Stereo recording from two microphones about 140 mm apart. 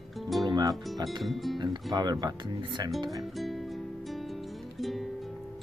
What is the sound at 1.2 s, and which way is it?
Speech, centre (ahead or behind).